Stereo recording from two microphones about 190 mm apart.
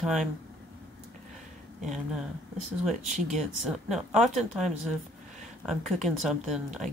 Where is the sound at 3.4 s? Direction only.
Centre (ahead or behind).